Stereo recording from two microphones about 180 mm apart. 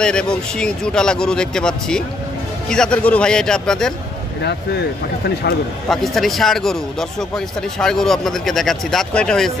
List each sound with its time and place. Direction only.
0.0 s speech: 5° left (ahead or behind)
4.4 s speech: 65° left (ahead or behind)
5.9 s speech: centre (ahead or behind)